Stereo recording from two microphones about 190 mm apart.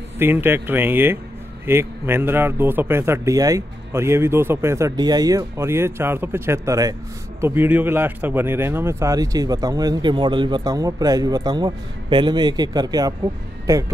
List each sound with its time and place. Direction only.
0.2 s speech: 10° right (ahead or behind)